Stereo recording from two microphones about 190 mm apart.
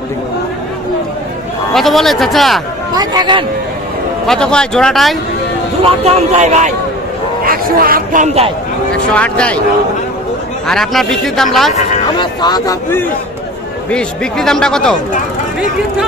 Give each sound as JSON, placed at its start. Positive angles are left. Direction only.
{"t": 1.7, "sound": "speech", "side_deg": 0}
{"t": 2.9, "sound": "a man's voice", "side_deg": -20}
{"t": 4.3, "sound": "speech", "side_deg": 5}
{"t": 6.0, "sound": "speech", "side_deg": -35}
{"t": 7.4, "sound": "speech", "side_deg": -50}
{"t": 8.9, "sound": "speech", "side_deg": 5}
{"t": 10.7, "sound": "speech", "side_deg": 0}
{"t": 12.2, "sound": "speech", "side_deg": 25}
{"t": 13.8, "sound": "speech", "side_deg": 5}